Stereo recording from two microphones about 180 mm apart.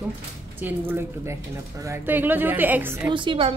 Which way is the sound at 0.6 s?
10° right (ahead or behind).